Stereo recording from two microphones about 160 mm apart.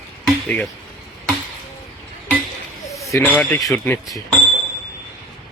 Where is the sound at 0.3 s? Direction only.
5° left (ahead or behind).